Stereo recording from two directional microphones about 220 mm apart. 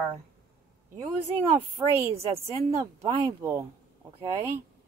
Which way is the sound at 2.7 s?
15° right (ahead or behind).